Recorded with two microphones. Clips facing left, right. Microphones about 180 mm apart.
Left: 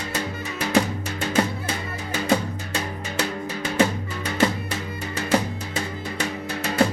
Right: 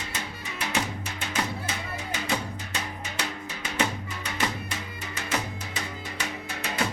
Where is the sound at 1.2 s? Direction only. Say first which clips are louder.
Left 8 dB; 35° left (ahead or behind).